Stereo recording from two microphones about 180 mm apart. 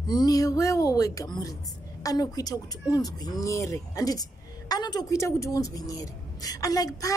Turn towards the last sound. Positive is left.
turn(degrees=20)  # may be behind; listen again after turning